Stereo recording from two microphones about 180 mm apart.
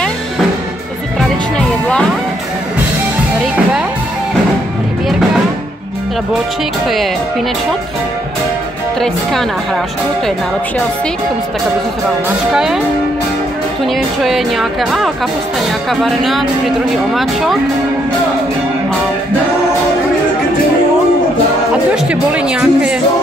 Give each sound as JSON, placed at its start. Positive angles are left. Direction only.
{"t": 9.0, "sound": "speech", "side_deg": 0}
{"t": 12.5, "sound": "speech", "side_deg": -5}
{"t": 13.9, "sound": "speech", "side_deg": 0}
{"t": 21.9, "sound": "speech", "side_deg": -5}